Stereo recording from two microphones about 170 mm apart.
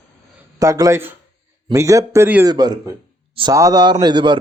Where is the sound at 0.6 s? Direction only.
20° right (ahead or behind).